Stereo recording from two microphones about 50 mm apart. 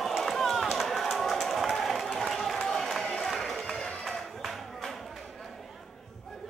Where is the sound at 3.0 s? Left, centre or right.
Centre.